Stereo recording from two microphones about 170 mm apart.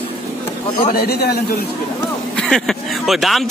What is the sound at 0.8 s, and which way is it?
Speech, 65° left (ahead or behind).